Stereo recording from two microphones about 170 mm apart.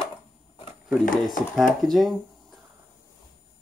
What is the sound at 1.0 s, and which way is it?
Speech, 55° left (ahead or behind).